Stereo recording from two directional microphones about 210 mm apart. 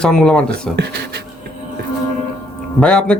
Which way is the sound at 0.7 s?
50° right (ahead or behind).